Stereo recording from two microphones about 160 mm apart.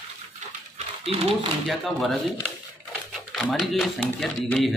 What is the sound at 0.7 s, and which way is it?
Dog, 40° right (ahead or behind).